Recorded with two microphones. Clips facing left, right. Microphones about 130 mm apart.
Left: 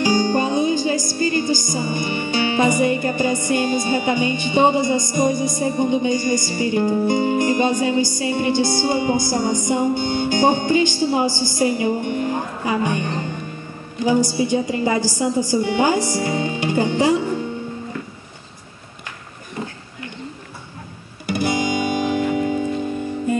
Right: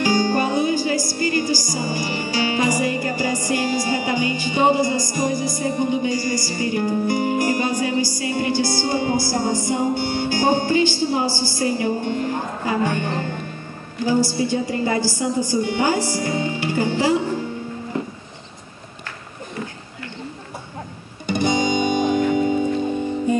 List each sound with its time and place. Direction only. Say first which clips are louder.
0.0 s music: left 1 dB; 20° left (ahead or behind)
17.9 s music: right 5 dB; 25° right (ahead or behind)
21.3 s music: right 1 dB; 5° left (ahead or behind)